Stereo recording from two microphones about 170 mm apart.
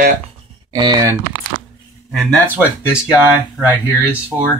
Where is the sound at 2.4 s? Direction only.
10° right (ahead or behind).